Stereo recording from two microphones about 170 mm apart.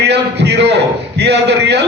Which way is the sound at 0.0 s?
80° right.